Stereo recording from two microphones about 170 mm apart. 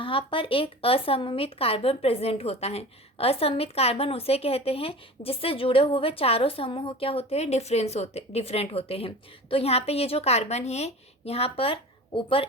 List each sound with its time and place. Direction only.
0.0 s speech: 30° left (ahead or behind)